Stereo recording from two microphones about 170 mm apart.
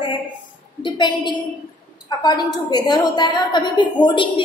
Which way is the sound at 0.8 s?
25° left (ahead or behind).